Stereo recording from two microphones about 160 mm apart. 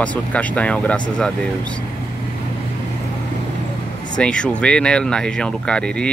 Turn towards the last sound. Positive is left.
turn(degrees=5)  # may be behind; listen again after turning